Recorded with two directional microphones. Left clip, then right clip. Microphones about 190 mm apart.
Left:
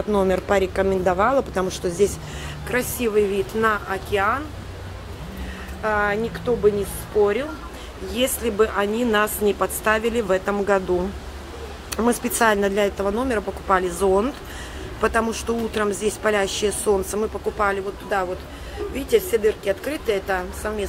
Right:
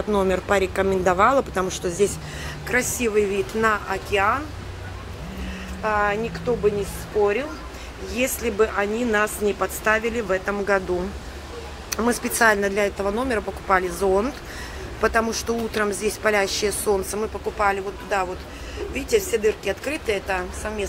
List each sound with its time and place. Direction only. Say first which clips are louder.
0.1 s speech: left 1 dB; 5° left (ahead or behind)
5.8 s speech: even; 5° left (ahead or behind)
8.1 s speech: left 1 dB; 10° left (ahead or behind)
11.9 s speech: left 1 dB; 15° left (ahead or behind)